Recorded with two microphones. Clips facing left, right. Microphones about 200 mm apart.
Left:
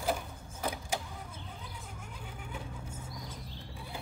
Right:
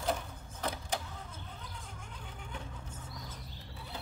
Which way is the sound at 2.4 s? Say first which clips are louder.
Left 2 dB; 10° left (ahead or behind).